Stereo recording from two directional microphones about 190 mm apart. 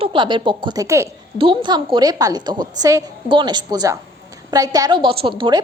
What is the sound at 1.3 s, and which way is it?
A woman's voice, 25° right (ahead or behind).